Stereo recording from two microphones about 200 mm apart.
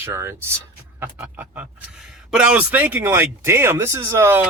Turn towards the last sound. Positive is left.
turn(degrees=-10)  # may be behind; listen again after turning